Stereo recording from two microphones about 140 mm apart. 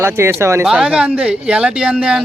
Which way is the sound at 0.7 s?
5° right (ahead or behind).